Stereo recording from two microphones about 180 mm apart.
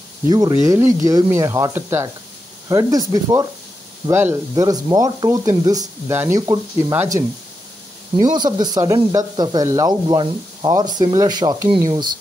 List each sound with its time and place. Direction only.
0.3 s speech: 20° right (ahead or behind)